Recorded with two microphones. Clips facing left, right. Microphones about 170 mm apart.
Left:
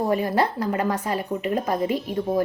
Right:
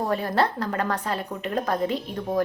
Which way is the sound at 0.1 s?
10° left (ahead or behind).